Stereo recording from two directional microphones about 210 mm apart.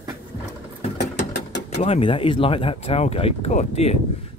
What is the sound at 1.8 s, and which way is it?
Speech, 30° left (ahead or behind).